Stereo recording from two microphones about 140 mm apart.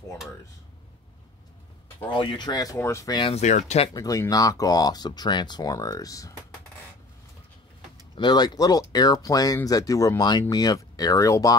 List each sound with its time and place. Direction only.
2.0 s speech: 35° left (ahead or behind); by 3.2 s 20° left (ahead or behind)
3.3 s speech: 55° left (ahead or behind)
3.9 s speech: 25° left (ahead or behind)
8.2 s speech: 30° left (ahead or behind)